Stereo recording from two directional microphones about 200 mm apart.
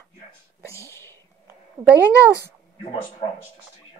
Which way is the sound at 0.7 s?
15° left (ahead or behind).